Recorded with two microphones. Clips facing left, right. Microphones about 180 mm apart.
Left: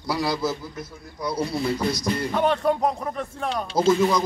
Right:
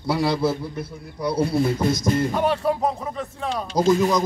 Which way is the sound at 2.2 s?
10° right (ahead or behind).